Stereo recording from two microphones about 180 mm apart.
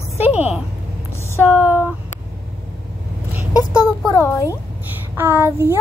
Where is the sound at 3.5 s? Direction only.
20° left (ahead or behind).